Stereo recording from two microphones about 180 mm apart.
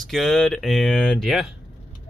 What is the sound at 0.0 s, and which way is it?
Speech, centre (ahead or behind).